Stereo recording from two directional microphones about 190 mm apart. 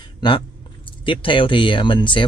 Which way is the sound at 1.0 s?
25° left (ahead or behind).